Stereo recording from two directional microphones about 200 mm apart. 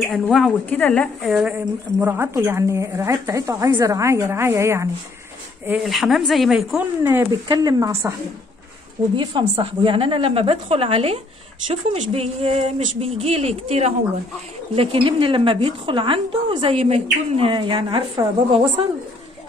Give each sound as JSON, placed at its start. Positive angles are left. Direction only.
{"t": 0.0, "sound": "a woman's voice", "side_deg": 0}
{"t": 5.7, "sound": "a woman's voice", "side_deg": 0}
{"t": 9.1, "sound": "a woman's voice", "side_deg": -25}